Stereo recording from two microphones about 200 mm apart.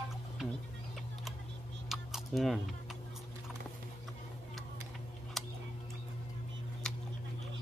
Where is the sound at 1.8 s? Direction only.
Centre (ahead or behind).